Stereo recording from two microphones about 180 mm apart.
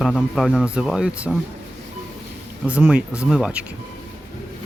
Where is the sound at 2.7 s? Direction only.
5° right (ahead or behind).